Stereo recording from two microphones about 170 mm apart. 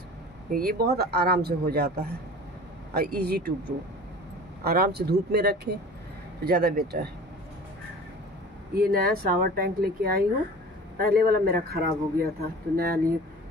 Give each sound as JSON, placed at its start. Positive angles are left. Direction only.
{"t": 0.5, "sound": "speech", "side_deg": -60}
{"t": 6.4, "sound": "speech", "side_deg": -60}
{"t": 8.7, "sound": "speech", "side_deg": -65}